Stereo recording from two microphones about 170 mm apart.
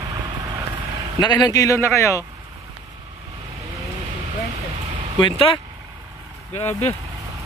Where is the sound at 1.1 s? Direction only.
25° left (ahead or behind).